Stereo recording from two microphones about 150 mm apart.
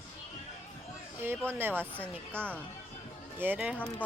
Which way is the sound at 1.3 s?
15° right (ahead or behind).